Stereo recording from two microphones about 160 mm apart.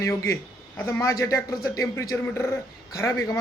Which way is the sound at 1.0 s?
20° left (ahead or behind).